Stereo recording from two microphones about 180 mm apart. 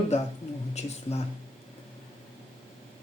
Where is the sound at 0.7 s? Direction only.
35° left (ahead or behind).